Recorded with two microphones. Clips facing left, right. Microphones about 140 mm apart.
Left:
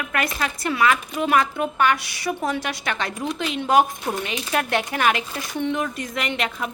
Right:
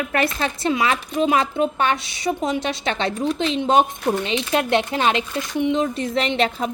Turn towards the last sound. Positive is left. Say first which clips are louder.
# right 5 dB
turn(degrees=-30)  # may be behind; listen again after turning